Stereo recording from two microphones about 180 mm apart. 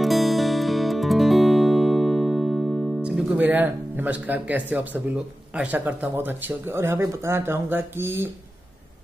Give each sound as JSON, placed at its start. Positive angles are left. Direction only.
{"t": 0.0, "sound": "music", "side_deg": 0}